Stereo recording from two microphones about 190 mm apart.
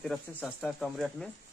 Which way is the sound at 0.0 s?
5° left (ahead or behind).